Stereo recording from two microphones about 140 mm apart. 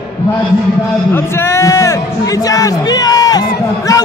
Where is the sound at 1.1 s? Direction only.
15° left (ahead or behind).